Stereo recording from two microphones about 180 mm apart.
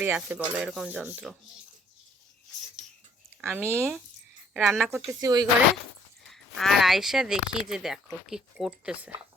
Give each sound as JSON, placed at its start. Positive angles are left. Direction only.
{"t": 0.0, "sound": "speech", "side_deg": -10}
{"t": 3.4, "sound": "speech", "side_deg": -10}
{"t": 5.2, "sound": "speech", "side_deg": -20}
{"t": 6.3, "sound": "speech", "side_deg": 0}